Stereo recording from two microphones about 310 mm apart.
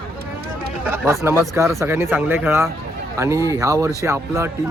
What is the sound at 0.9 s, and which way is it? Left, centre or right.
Speech, centre.